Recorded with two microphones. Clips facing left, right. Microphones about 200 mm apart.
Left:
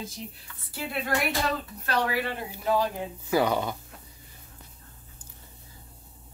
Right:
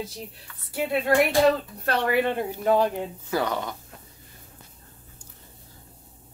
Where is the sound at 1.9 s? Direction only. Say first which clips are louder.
Right 5 dB; 55° right (ahead or behind).